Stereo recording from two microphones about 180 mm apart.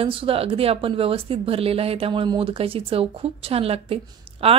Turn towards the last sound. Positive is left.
turn(degrees=-30)  # may be behind; listen again after turning